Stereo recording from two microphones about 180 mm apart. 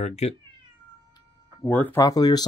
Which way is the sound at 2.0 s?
20° left (ahead or behind).